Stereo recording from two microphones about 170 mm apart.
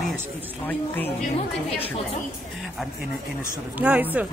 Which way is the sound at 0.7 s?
10° left (ahead or behind).